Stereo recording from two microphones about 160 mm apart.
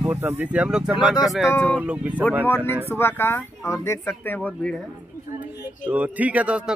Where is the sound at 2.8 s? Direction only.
15° left (ahead or behind).